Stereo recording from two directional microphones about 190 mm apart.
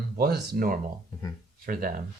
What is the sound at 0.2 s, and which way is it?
Speech, 50° right (ahead or behind).